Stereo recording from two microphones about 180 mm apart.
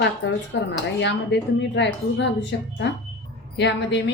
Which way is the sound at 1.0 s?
75° left (ahead or behind).